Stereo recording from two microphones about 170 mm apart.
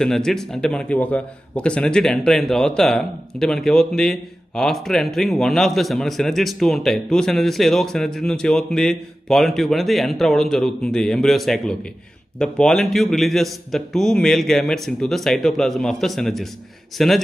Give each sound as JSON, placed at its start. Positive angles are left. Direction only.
{"t": 0.0, "sound": "a man's voice", "side_deg": 5}